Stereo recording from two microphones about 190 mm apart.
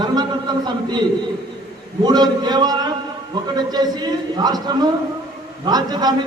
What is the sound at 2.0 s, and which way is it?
A man's voice, 20° right (ahead or behind).